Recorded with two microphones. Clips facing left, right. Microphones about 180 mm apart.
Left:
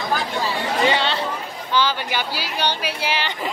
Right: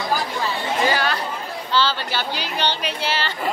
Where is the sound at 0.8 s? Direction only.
25° left (ahead or behind).